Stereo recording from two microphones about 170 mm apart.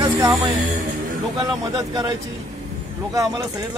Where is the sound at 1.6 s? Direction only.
25° right (ahead or behind).